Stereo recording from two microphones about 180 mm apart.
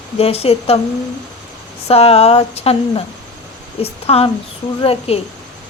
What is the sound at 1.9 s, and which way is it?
Speech, 35° left (ahead or behind).